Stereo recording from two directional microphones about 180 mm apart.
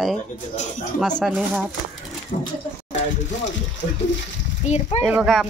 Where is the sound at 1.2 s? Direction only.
5° right (ahead or behind).